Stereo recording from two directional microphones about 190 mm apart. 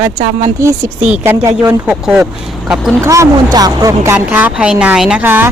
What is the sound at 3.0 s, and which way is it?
Speech, 15° right (ahead or behind).